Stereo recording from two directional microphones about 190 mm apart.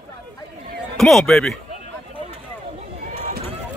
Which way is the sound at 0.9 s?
Centre (ahead or behind).